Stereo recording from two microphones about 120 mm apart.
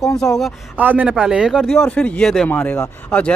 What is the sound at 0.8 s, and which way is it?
Speech, 15° right (ahead or behind).